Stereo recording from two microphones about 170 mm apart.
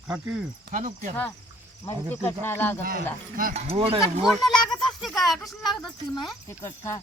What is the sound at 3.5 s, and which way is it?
Speech, 35° right (ahead or behind).